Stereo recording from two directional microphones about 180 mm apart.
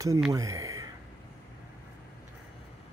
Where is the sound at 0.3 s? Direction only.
20° right (ahead or behind).